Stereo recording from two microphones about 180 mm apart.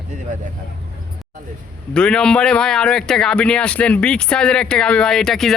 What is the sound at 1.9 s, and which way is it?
A man's voice, 5° left (ahead or behind).